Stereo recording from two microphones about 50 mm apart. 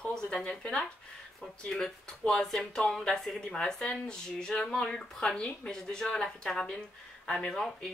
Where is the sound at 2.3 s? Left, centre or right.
Centre.